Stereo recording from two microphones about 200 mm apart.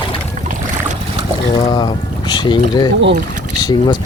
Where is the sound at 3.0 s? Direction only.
60° right (ahead or behind).